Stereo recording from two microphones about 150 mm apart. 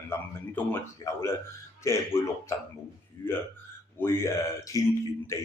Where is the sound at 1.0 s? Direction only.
25° left (ahead or behind).